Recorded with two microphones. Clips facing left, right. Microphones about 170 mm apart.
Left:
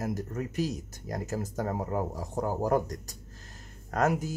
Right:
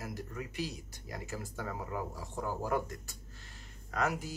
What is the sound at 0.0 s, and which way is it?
Speech, 45° left (ahead or behind).